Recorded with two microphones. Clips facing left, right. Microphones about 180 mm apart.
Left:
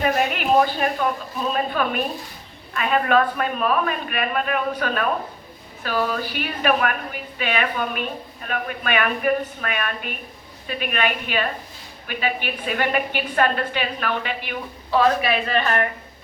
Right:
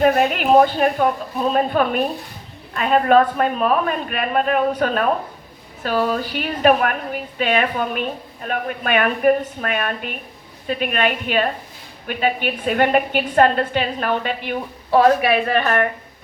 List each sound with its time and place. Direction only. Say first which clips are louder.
0.0 s a woman's voice: right 5 dB; 45° right (ahead or behind)